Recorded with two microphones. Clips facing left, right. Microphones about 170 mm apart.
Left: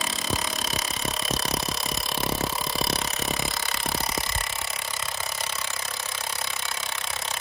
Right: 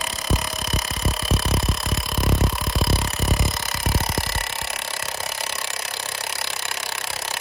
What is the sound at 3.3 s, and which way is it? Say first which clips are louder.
Music: right 4 dB; 40° right (ahead or behind).